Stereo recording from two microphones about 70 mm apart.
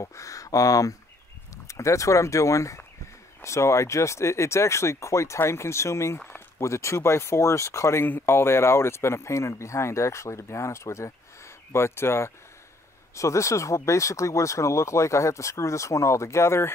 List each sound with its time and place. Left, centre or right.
0.0 s speech: left
8.0 s speech: left